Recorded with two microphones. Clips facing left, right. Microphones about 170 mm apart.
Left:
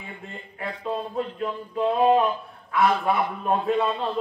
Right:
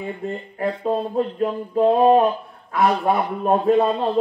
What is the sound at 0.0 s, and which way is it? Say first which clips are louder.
A man's voice: right 12 dB; 40° right (ahead or behind).